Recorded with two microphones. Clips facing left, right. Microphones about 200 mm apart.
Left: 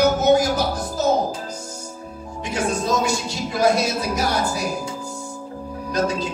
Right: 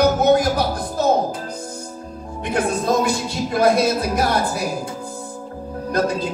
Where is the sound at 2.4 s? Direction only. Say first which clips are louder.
Right 3 dB; 55° right (ahead or behind).